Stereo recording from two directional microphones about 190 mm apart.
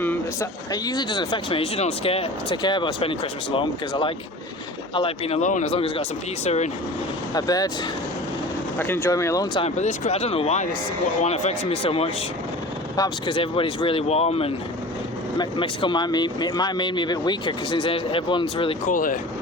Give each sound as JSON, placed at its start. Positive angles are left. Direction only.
{"t": 0.0, "sound": "a sound", "side_deg": 10}
{"t": 0.7, "sound": "speech", "side_deg": 20}
{"t": 7.3, "sound": "speech", "side_deg": 20}
{"t": 8.8, "sound": "speech", "side_deg": 15}
{"t": 9.6, "sound": "speech", "side_deg": 40}
{"t": 18.9, "sound": "speech", "side_deg": 45}